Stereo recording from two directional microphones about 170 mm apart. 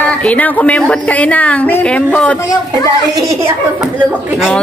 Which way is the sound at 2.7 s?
20° right (ahead or behind).